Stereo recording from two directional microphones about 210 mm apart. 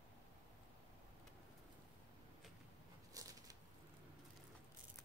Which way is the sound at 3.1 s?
15° right (ahead or behind).